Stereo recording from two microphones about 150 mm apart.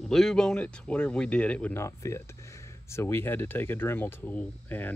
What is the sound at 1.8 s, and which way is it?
Speech, 20° left (ahead or behind).